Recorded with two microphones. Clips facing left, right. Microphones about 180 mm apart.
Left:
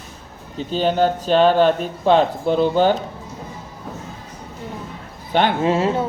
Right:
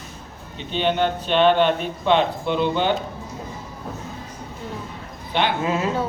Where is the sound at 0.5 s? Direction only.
40° left (ahead or behind).